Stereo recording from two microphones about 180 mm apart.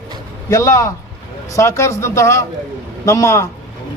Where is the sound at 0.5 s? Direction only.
20° left (ahead or behind).